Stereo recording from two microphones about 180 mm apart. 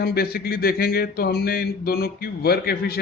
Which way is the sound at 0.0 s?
60° left (ahead or behind).